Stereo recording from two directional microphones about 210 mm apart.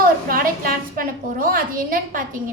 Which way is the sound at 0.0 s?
45° right (ahead or behind).